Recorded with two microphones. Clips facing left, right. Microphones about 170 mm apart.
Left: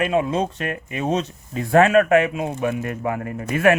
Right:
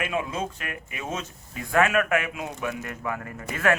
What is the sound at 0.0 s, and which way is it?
A man's voice, 35° left (ahead or behind).